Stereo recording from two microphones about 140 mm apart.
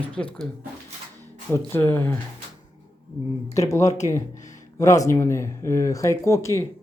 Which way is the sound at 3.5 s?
25° left (ahead or behind).